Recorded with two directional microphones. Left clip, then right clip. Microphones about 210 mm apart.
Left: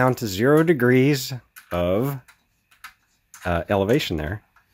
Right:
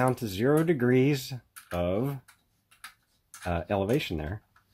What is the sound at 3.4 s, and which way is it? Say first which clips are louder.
Speech: left 8 dB; 30° left (ahead or behind).